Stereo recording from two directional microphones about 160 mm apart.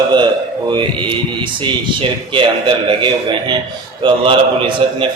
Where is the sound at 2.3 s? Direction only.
30° right (ahead or behind).